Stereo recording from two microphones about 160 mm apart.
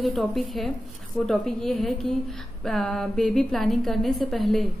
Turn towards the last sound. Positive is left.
turn(degrees=0)  # may be behind; listen again after turning